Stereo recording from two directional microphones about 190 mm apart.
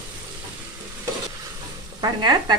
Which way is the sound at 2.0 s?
20° right (ahead or behind).